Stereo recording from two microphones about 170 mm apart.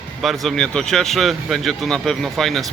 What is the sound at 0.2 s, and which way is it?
Speech, centre (ahead or behind).